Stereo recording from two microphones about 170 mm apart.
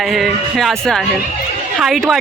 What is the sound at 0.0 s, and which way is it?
Speech, centre (ahead or behind).